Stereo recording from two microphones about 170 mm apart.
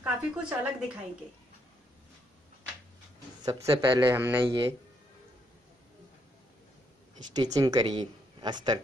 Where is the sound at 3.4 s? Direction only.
20° right (ahead or behind).